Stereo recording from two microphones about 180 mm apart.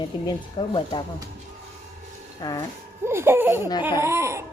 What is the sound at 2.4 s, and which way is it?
Speech, 20° left (ahead or behind).